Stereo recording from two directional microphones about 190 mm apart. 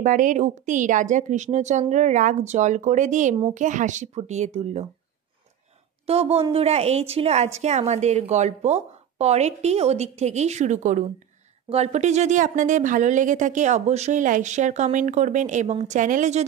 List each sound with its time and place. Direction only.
0.0 s speech: 45° right (ahead or behind)
6.0 s speech: 30° right (ahead or behind)